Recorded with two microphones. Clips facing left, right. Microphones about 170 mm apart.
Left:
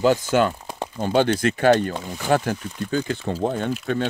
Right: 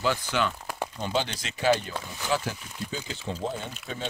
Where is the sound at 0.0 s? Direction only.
45° left (ahead or behind).